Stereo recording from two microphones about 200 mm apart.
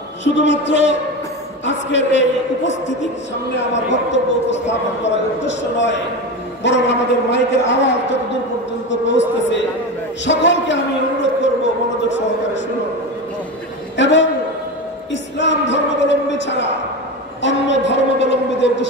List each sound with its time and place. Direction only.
0.2 s a man's voice: 65° left (ahead or behind)
9.0 s a man's voice: 65° left (ahead or behind)
13.9 s a man's voice: 65° left (ahead or behind)
15.3 s music: 65° left (ahead or behind)
17.4 s a man's voice: 65° left (ahead or behind)